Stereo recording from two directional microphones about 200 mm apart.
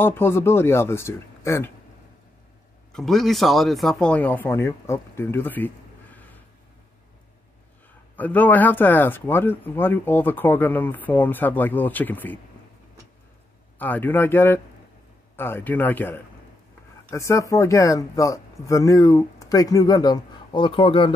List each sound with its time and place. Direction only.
0.0 s speech: 10° left (ahead or behind)
2.9 s speech: centre (ahead or behind)
8.2 s speech: 10° left (ahead or behind)
13.7 s speech: 10° left (ahead or behind); by 21.1 s 25° left (ahead or behind)